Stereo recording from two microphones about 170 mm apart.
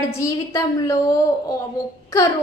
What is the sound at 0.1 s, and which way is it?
Speech, 20° left (ahead or behind).